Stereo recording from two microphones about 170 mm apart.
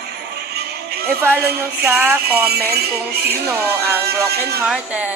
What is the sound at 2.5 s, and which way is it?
Music, 70° right (ahead or behind).